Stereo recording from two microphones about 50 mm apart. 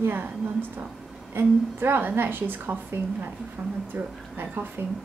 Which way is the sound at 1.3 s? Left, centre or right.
Right.